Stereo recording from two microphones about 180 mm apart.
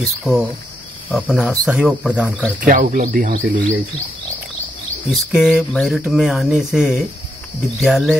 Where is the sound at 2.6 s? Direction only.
50° right (ahead or behind).